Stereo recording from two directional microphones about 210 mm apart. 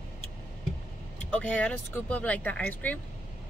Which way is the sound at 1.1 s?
5° left (ahead or behind).